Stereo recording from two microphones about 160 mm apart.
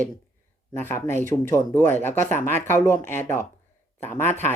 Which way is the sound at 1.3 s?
10° left (ahead or behind).